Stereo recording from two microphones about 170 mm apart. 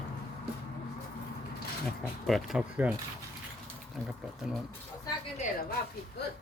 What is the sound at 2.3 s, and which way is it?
Speech, centre (ahead or behind).